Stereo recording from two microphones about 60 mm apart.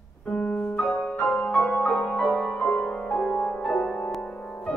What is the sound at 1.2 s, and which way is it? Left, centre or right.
Music, left.